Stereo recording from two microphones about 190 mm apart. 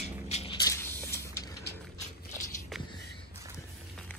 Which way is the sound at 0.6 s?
15° left (ahead or behind).